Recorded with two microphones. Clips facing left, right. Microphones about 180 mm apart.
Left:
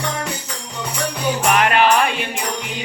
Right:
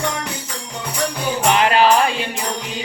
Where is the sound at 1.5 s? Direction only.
25° right (ahead or behind).